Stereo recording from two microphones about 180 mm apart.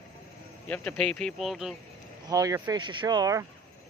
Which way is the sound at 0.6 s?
10° left (ahead or behind).